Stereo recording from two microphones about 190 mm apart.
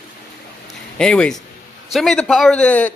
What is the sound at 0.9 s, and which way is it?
A man's voice, 5° left (ahead or behind).